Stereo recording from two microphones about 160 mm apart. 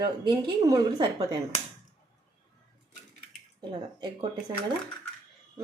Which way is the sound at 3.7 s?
30° right (ahead or behind).